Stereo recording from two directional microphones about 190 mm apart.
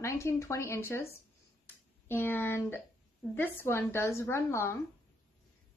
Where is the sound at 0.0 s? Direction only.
15° left (ahead or behind).